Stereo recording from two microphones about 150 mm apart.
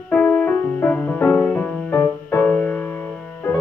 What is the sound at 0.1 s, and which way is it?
Music, 10° left (ahead or behind).